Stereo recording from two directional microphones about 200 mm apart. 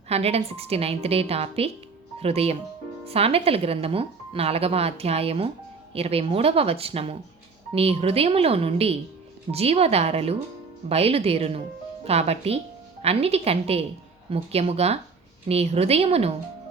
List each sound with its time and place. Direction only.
0.1 s a woman's voice: 30° right (ahead or behind)